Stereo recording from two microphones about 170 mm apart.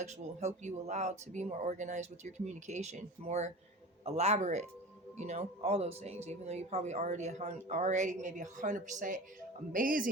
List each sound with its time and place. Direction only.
0.0 s speech: 45° right (ahead or behind)